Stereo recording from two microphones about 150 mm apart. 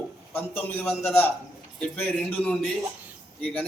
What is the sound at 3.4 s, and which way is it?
Speech, 5° left (ahead or behind).